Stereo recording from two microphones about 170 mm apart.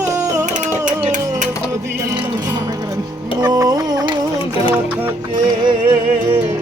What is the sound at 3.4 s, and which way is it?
Music, 20° right (ahead or behind).